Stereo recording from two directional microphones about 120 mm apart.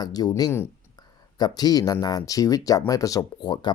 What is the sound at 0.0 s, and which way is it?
Speech, 35° left (ahead or behind).